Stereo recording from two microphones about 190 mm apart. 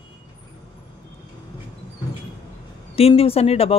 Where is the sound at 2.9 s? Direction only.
30° left (ahead or behind).